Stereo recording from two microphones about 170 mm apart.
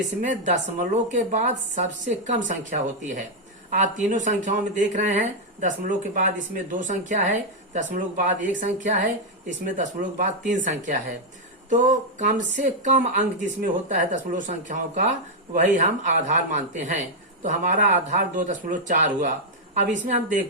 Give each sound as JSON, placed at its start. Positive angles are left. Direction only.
{"t": 0.2, "sound": "speech", "side_deg": -45}